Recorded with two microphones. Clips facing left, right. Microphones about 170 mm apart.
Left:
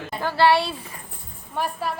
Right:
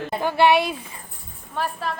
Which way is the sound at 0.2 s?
20° right (ahead or behind).